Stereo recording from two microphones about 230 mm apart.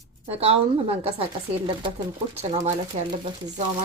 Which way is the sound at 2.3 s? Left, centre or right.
Right.